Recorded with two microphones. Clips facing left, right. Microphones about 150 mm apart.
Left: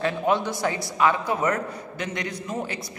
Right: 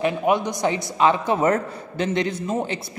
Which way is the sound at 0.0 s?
15° right (ahead or behind).